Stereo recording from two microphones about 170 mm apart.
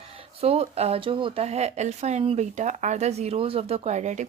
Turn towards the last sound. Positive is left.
turn(degrees=-45)  # may be behind; listen again after turning